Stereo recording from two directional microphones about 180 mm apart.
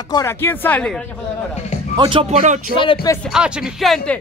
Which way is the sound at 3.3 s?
Centre (ahead or behind).